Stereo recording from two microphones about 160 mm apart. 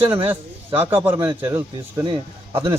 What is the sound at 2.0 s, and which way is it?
Speech, 30° right (ahead or behind).